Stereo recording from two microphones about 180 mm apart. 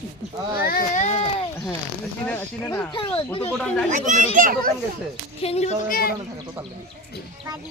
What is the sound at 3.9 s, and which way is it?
Speech, 45° right (ahead or behind).